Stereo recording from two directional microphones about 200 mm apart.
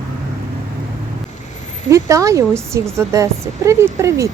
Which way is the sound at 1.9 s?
15° right (ahead or behind).